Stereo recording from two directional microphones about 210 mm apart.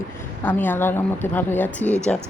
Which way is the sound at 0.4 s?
10° left (ahead or behind).